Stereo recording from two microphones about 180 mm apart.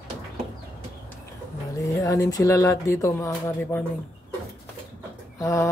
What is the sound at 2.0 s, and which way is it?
Speech, 20° left (ahead or behind).